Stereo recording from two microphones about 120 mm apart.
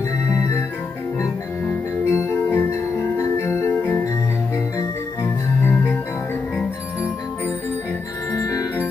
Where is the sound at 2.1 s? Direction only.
20° left (ahead or behind).